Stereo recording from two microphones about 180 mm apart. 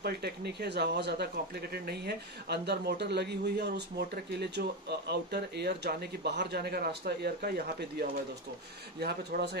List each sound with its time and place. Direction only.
0.0 s speech: 65° right (ahead or behind)